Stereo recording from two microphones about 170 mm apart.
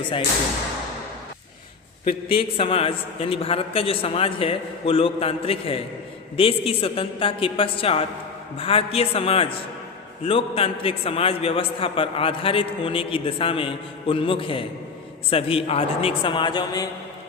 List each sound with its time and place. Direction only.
2.0 s a man's voice: 35° left (ahead or behind)